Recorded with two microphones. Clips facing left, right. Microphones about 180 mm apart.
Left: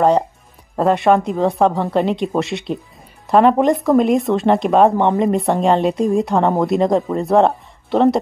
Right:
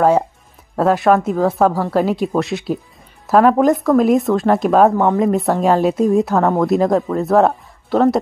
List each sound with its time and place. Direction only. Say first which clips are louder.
0.7 s speech: even; centre (ahead or behind)